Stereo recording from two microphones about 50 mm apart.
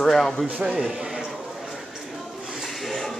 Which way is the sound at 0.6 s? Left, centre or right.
Centre.